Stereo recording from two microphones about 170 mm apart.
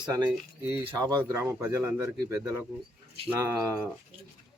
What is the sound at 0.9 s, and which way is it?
Speech, 20° right (ahead or behind).